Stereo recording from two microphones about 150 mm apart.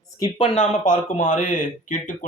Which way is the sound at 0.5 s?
55° left (ahead or behind).